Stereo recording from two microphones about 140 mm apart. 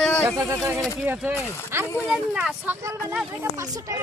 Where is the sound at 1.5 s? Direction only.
15° left (ahead or behind).